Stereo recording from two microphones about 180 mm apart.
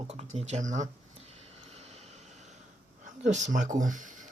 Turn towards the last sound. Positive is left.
turn(degrees=-45)  # may be behind; listen again after turning